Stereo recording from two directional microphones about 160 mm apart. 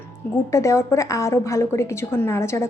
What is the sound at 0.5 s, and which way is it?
A woman's voice, 20° left (ahead or behind).